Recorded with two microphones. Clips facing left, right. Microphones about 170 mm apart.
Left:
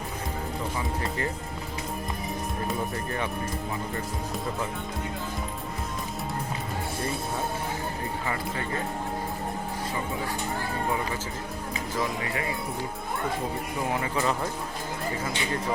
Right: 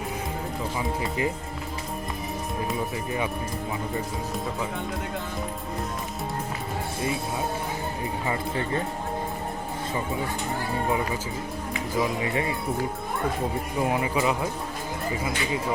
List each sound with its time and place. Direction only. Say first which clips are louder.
2.6 s speech: right 1 dB; 10° right (ahead or behind)
8.3 s speech: right 5 dB; 30° right (ahead or behind)
11.9 s speech: right 5 dB; 25° right (ahead or behind)
13.8 s speech: right 3 dB; 15° right (ahead or behind)